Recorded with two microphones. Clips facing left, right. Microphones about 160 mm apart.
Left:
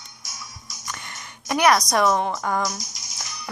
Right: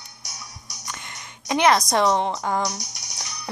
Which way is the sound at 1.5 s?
25° right (ahead or behind).